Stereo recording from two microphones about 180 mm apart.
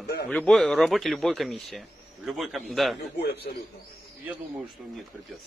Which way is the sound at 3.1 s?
65° left (ahead or behind).